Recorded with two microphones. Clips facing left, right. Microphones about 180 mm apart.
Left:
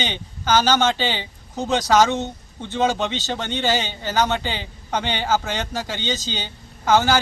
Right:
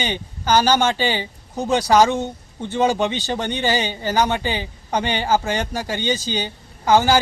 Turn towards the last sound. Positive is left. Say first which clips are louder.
# right 2 dB
turn(degrees=-15)  # may be behind; listen again after turning